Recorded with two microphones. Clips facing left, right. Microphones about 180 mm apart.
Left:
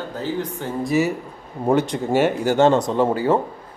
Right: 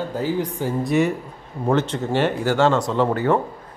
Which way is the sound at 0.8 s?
5° left (ahead or behind).